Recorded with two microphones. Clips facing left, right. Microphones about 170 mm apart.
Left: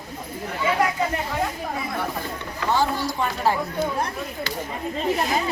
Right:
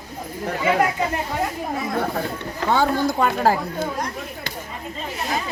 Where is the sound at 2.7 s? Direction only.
55° right (ahead or behind).